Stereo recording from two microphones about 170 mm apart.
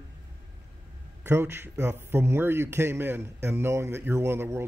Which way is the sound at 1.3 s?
15° right (ahead or behind).